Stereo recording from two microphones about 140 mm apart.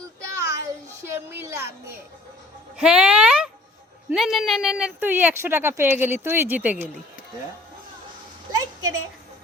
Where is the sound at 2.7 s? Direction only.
5° right (ahead or behind).